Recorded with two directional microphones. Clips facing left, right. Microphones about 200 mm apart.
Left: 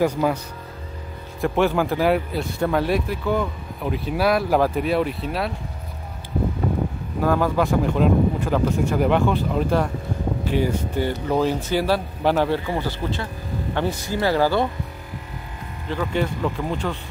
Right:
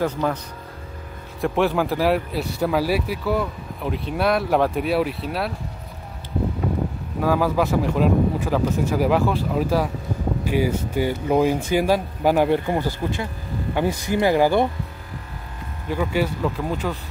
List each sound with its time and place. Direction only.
0.0 s speech: 10° left (ahead or behind)
1.4 s speech: centre (ahead or behind)
7.2 s speech: 5° right (ahead or behind)
15.9 s speech: 10° right (ahead or behind)